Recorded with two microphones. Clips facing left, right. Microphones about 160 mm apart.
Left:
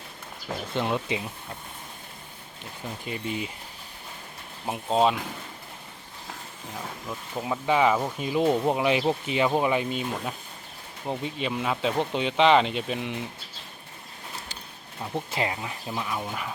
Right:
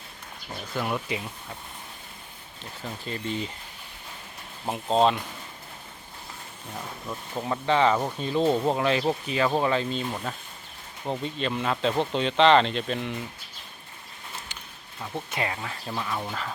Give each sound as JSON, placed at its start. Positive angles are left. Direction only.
{"t": 0.7, "sound": "speech", "side_deg": 25}
{"t": 3.0, "sound": "speech", "side_deg": 10}
{"t": 4.6, "sound": "speech", "side_deg": 5}
{"t": 7.4, "sound": "speech", "side_deg": 10}
{"t": 15.3, "sound": "speech", "side_deg": 25}